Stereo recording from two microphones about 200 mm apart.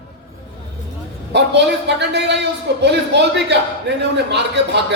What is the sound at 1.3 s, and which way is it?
A man's voice, 60° right (ahead or behind).